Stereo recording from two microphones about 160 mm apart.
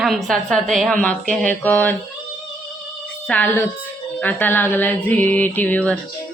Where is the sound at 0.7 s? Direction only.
5° left (ahead or behind).